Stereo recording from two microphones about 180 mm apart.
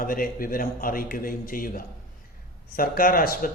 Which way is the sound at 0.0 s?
55° left (ahead or behind).